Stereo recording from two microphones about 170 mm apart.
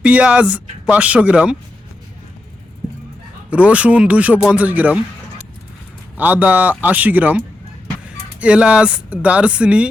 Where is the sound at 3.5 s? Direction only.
10° right (ahead or behind).